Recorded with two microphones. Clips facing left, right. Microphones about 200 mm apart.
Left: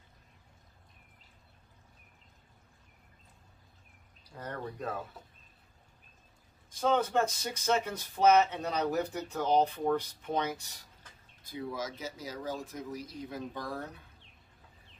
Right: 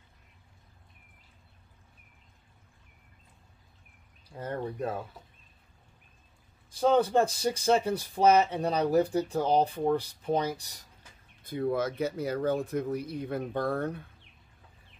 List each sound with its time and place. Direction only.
4.4 s speech: 25° right (ahead or behind)
6.7 s speech: 35° right (ahead or behind)
11.4 s speech: 55° right (ahead or behind)